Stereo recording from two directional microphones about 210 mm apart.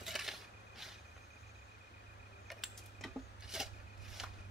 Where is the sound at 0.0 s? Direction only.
Centre (ahead or behind).